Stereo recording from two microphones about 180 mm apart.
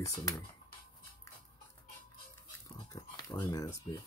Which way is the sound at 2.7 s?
20° left (ahead or behind).